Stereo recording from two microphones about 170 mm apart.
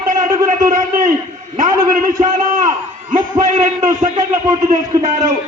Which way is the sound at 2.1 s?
20° right (ahead or behind).